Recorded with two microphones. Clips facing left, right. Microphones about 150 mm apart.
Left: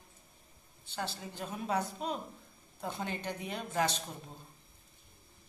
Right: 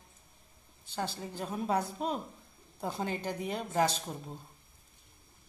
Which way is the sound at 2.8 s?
35° right (ahead or behind).